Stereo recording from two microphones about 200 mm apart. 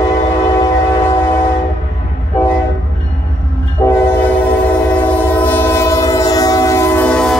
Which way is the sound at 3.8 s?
15° left (ahead or behind).